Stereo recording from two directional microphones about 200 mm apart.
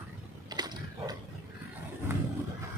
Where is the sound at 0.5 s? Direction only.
20° right (ahead or behind).